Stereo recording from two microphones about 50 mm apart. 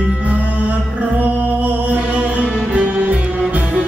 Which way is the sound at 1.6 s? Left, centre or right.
Right.